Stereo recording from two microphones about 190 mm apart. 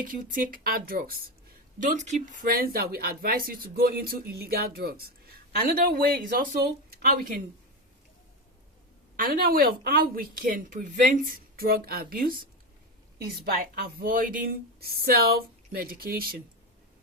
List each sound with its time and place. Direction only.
0.0 s speech: 45° right (ahead or behind)
1.8 s speech: 40° right (ahead or behind)
9.1 s speech: 50° right (ahead or behind)